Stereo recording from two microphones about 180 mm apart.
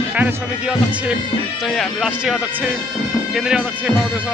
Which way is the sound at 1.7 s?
Centre (ahead or behind).